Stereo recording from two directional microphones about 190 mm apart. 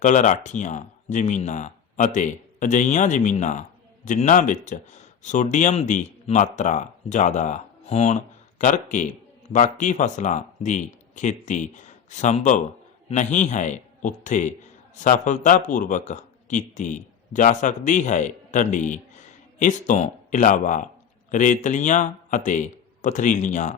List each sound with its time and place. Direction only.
0.0 s a man's voice: 40° left (ahead or behind)